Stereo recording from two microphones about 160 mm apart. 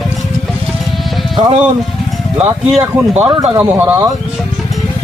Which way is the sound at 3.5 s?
15° right (ahead or behind).